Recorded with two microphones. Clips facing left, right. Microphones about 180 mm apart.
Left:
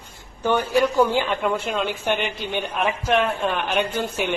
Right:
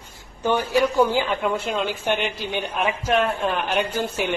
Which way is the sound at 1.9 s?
55° left (ahead or behind).